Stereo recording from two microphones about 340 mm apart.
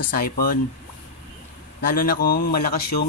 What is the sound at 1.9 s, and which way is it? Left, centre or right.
Speech, left.